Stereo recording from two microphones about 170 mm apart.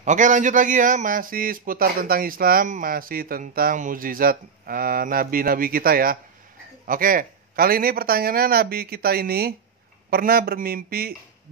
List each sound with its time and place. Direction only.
0.0 s a man's voice: 45° right (ahead or behind)